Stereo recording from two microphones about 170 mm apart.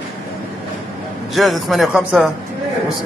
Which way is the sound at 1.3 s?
Centre (ahead or behind).